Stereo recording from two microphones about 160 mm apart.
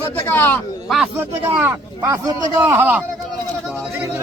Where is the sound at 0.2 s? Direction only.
15° left (ahead or behind).